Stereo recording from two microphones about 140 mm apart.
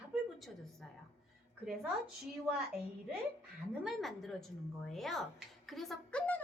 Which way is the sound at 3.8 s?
Centre (ahead or behind).